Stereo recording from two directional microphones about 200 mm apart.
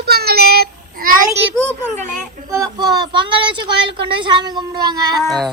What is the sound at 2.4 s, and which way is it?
Speech, 20° right (ahead or behind).